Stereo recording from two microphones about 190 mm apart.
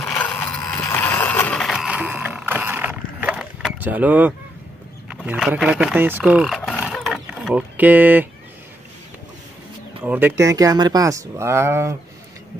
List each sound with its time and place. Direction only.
0.0 s a sound: 10° left (ahead or behind); by 4.3 s 10° right (ahead or behind)
5.1 s speech: 5° right (ahead or behind)
6.9 s mechanisms: centre (ahead or behind)
10.0 s speech: 10° right (ahead or behind)